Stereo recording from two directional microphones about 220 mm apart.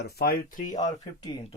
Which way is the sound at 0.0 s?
45° left (ahead or behind).